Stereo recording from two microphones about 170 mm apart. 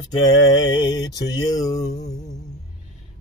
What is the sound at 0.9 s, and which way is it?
Mantra, 25° left (ahead or behind).